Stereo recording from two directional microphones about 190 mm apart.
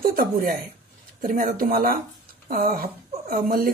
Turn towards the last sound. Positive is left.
turn(degrees=-50)  # may be behind; listen again after turning